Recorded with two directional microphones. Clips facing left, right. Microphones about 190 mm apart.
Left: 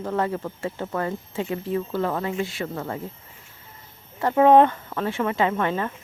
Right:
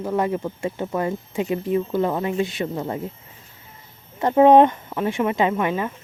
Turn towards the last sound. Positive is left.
turn(degrees=-10)  # may be behind; listen again after turning